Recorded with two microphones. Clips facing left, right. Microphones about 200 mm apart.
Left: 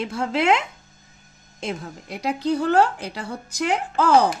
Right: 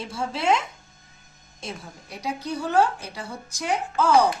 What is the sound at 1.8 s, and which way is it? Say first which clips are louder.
A woman's voice: left 5 dB; 65° left (ahead or behind).